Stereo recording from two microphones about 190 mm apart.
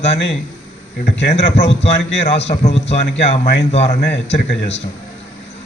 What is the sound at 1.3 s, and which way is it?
Speech, 35° left (ahead or behind).